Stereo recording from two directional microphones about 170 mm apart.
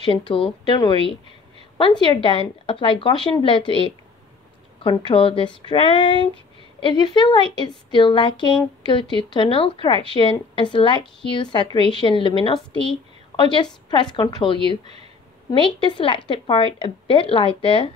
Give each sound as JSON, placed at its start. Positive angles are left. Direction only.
{"t": 0.1, "sound": "a woman's voice", "side_deg": 30}